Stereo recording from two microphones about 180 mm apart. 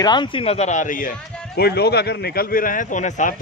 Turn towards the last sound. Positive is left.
turn(degrees=45)  # may be behind; listen again after turning